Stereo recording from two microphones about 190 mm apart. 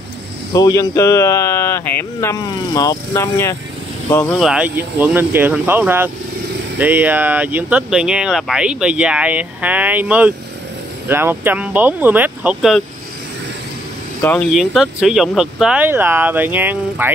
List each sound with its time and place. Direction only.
0.5 s speech: 20° left (ahead or behind)
4.4 s speech: 5° right (ahead or behind)
14.2 s speech: 5° left (ahead or behind); by 17.1 s 10° right (ahead or behind)